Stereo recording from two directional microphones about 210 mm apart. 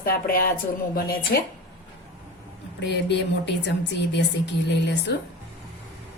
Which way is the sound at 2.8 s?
55° left (ahead or behind).